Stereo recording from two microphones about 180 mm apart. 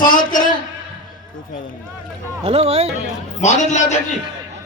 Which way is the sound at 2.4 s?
35° right (ahead or behind).